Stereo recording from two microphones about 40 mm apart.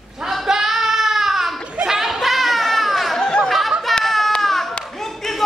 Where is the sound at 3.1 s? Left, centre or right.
Centre.